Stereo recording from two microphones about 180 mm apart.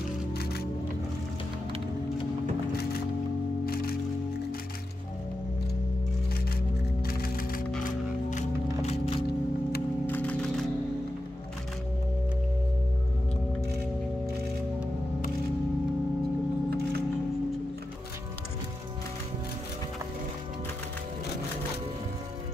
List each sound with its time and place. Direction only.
0.3 s music: 60° left (ahead or behind)
3.6 s music: 55° left (ahead or behind)
7.1 s a sound: 55° left (ahead or behind)
7.8 s music: 45° left (ahead or behind)
10.0 s music: 10° left (ahead or behind)